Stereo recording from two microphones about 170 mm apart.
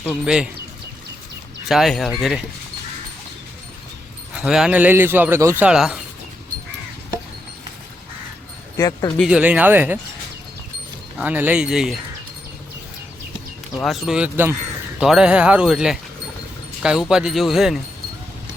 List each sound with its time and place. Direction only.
0.0 s speech: 5° right (ahead or behind)
1.6 s speech: centre (ahead or behind)
4.4 s speech: 5° right (ahead or behind)
5.6 s speech: 5° right (ahead or behind)
8.8 s speech: 20° left (ahead or behind)
9.1 s speech: 5° right (ahead or behind)
11.2 s speech: 10° right (ahead or behind)
13.7 s speech: centre (ahead or behind)